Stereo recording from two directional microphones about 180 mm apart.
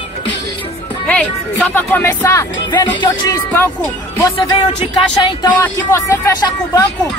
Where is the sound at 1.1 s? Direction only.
10° left (ahead or behind).